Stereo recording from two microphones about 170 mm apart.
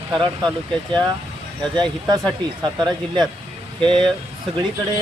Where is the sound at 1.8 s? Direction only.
25° right (ahead or behind).